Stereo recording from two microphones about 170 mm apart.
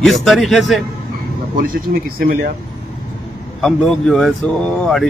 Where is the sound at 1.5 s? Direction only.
60° right (ahead or behind).